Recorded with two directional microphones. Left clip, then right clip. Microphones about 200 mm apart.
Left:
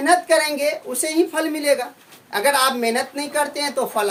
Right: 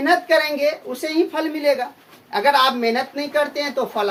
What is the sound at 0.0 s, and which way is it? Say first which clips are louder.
A woman's voice: even; 10° left (ahead or behind).